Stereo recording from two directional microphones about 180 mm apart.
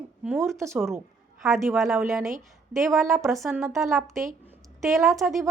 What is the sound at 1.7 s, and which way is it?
A woman's voice, centre (ahead or behind).